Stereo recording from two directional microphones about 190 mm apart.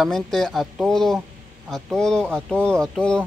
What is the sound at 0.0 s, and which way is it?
Speech, centre (ahead or behind).